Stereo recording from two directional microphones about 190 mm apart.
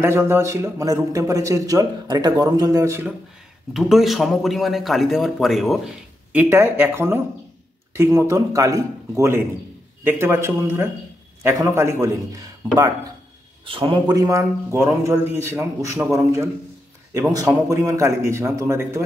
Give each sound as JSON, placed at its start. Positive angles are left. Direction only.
{"t": 0.0, "sound": "speech", "side_deg": -15}
{"t": 3.7, "sound": "a man's voice", "side_deg": 0}
{"t": 6.3, "sound": "speech", "side_deg": -10}
{"t": 13.7, "sound": "speech", "side_deg": -25}